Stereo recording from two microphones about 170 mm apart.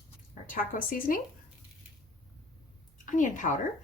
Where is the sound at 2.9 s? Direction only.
50° left (ahead or behind).